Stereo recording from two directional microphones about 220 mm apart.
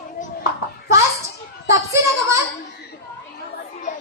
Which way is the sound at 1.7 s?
15° right (ahead or behind).